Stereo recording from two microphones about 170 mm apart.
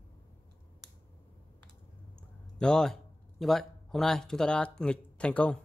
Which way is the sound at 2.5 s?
5° left (ahead or behind).